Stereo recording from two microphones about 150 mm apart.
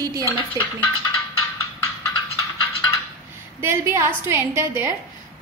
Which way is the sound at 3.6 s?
15° right (ahead or behind).